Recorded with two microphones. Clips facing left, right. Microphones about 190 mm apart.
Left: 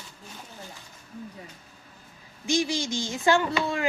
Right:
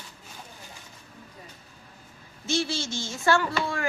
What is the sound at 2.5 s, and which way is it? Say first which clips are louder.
Speech: left 2 dB; 15° left (ahead or behind).